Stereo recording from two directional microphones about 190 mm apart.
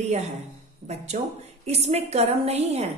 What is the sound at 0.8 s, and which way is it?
Speech, 20° right (ahead or behind).